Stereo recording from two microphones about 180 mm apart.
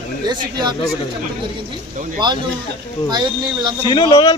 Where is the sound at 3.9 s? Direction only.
30° left (ahead or behind).